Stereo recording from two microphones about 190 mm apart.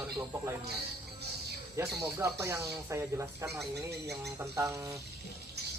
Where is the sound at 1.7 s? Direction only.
15° right (ahead or behind).